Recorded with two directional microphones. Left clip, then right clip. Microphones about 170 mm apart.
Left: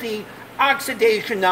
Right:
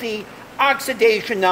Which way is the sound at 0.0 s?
50° right (ahead or behind).